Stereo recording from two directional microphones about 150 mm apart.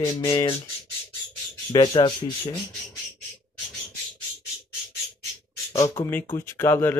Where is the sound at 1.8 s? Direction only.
35° left (ahead or behind).